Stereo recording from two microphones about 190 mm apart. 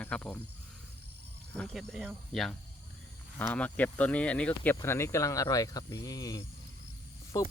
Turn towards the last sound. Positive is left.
turn(degrees=20)  # may be behind; listen again after turning